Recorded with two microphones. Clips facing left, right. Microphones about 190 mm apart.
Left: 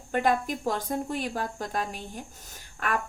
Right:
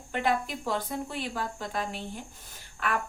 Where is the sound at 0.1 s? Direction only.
45° left (ahead or behind).